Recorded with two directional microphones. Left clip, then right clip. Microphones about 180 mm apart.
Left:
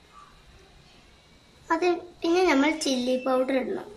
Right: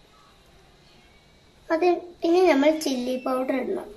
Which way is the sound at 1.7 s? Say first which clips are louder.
Right 3 dB; 15° left (ahead or behind).